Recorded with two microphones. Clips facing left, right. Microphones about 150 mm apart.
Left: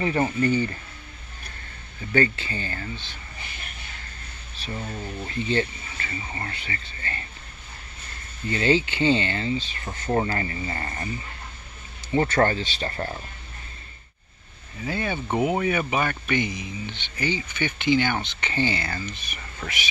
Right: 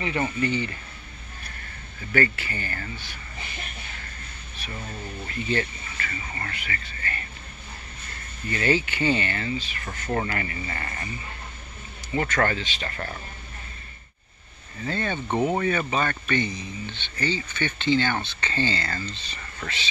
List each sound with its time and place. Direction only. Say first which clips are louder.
0.0 s speech: left 3 dB; 40° left (ahead or behind)
2.1 s speech: left 2 dB; 20° left (ahead or behind)
5.2 s speech: left 2 dB; 25° left (ahead or behind)
8.5 s speech: left 2 dB; 25° left (ahead or behind)
12.1 s speech: left 3 dB; 30° left (ahead or behind)
14.8 s speech: even; 10° left (ahead or behind)